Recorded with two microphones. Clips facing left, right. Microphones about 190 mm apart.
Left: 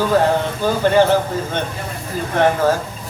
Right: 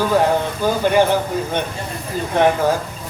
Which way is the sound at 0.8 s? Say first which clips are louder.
Left 2 dB; 15° right (ahead or behind).